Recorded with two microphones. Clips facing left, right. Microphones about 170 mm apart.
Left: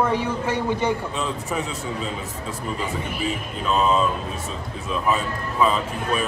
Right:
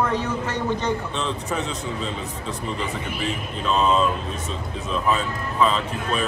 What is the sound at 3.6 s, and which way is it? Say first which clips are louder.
Speech: even; 5° left (ahead or behind).